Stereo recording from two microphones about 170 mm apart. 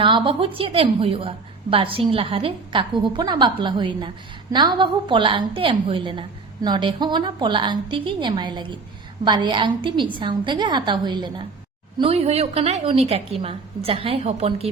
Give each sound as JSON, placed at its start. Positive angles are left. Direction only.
{"t": 0.0, "sound": "a woman's voice", "side_deg": -30}